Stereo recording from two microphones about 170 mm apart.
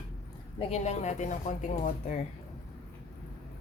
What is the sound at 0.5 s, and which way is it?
Speech, 40° left (ahead or behind).